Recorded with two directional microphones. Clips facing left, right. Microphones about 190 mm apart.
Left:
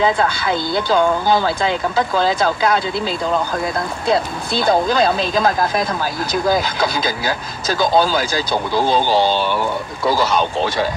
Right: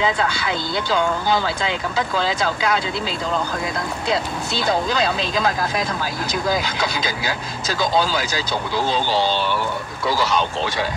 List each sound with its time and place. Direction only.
0.0 s speech: 50° left (ahead or behind)
4.1 s speech: 50° left (ahead or behind)